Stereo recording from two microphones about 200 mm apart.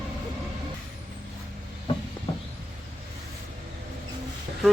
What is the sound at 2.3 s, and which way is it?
Vehicle, 20° left (ahead or behind).